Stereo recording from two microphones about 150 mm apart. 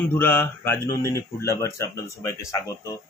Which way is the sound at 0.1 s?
15° left (ahead or behind).